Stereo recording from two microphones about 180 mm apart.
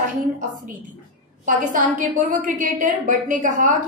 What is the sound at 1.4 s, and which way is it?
A woman's voice, 45° right (ahead or behind).